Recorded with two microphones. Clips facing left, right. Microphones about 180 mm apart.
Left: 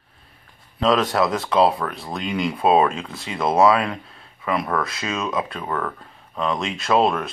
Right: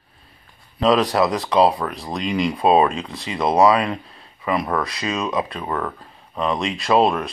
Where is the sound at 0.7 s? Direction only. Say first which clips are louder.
Right 2 dB; centre (ahead or behind).